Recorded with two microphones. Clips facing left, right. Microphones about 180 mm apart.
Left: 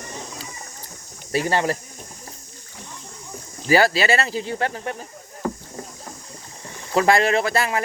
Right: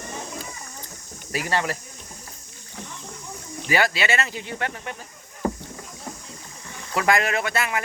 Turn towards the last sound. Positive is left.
turn(degrees=35)  # may be behind; listen again after turning